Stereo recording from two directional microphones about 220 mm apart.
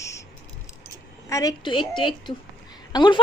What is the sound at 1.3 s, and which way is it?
A woman's voice, 15° left (ahead or behind).